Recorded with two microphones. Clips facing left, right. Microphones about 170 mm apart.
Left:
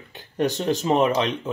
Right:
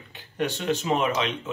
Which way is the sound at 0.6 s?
35° left (ahead or behind).